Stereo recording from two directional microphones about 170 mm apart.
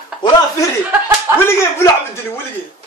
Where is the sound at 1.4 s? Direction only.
15° left (ahead or behind).